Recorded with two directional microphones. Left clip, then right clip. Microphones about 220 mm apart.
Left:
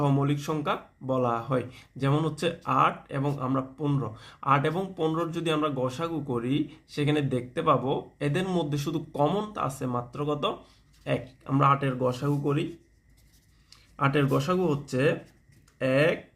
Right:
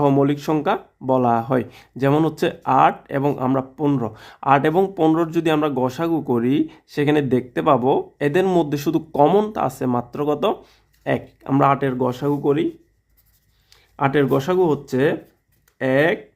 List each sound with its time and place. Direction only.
0.0 s speech: 45° right (ahead or behind)
13.9 s speech: 45° right (ahead or behind)